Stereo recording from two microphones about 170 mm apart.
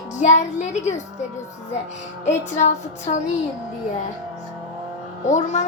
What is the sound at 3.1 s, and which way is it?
Music, 40° left (ahead or behind).